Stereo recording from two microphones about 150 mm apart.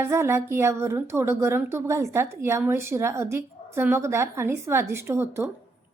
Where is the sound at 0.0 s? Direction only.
15° right (ahead or behind).